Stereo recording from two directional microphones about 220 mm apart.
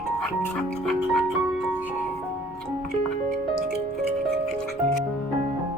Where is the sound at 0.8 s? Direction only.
Centre (ahead or behind).